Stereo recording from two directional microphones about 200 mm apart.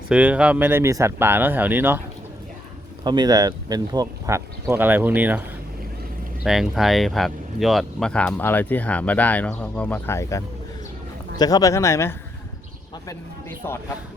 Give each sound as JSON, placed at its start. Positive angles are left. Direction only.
{"t": 0.1, "sound": "speech", "side_deg": -5}
{"t": 3.0, "sound": "speech", "side_deg": -20}
{"t": 6.4, "sound": "speech", "side_deg": 0}
{"t": 13.6, "sound": "speech", "side_deg": 10}